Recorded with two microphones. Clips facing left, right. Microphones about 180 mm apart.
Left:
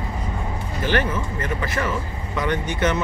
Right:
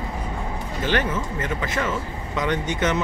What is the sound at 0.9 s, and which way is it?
Speech, 20° right (ahead or behind).